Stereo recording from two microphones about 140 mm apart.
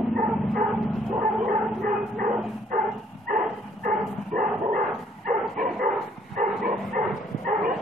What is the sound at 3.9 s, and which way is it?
Dog, 75° right (ahead or behind).